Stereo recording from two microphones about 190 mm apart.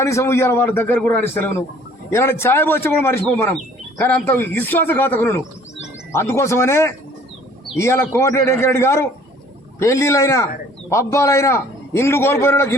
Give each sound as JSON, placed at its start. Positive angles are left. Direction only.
{"t": 0.0, "sound": "a man's voice", "side_deg": 15}